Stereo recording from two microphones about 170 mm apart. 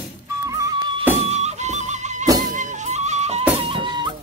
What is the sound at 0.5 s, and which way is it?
Music, 20° right (ahead or behind).